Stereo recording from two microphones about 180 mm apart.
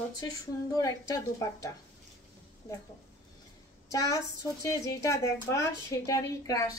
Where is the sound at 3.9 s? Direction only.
20° left (ahead or behind).